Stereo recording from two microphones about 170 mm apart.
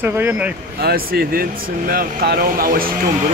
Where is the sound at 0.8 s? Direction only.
65° right (ahead or behind).